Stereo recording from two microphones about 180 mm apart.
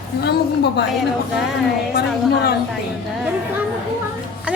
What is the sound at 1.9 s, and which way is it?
Speech, 60° left (ahead or behind).